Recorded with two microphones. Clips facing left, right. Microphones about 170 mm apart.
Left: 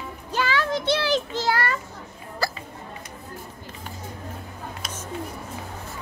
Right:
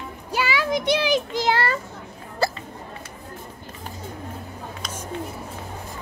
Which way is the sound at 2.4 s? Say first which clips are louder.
Right 5 dB; 25° right (ahead or behind).